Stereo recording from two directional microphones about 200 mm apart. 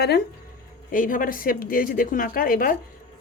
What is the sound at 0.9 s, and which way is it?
Speech, 45° left (ahead or behind).